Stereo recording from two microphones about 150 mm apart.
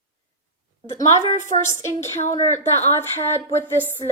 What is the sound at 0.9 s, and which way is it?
Speech, 50° left (ahead or behind).